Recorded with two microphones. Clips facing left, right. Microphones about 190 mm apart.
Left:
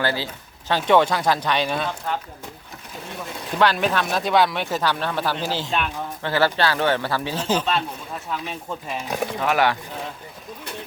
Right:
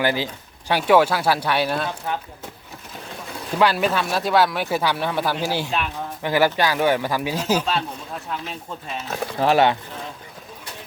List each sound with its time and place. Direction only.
0.0 s speech: 15° right (ahead or behind)
3.6 s speech: 5° right (ahead or behind)
9.0 s speech: 15° left (ahead or behind)
9.4 s speech: 30° right (ahead or behind)